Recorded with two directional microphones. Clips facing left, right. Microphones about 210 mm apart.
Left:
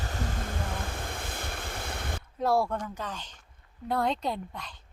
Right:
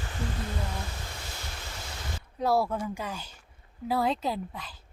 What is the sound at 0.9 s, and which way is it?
Waves, 55° left (ahead or behind).